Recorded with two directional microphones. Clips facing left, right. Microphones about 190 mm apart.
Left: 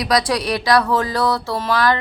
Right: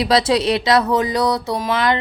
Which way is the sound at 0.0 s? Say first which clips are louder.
Right 3 dB; 25° right (ahead or behind).